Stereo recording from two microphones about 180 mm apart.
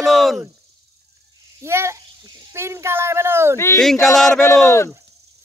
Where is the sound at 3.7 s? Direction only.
Centre (ahead or behind).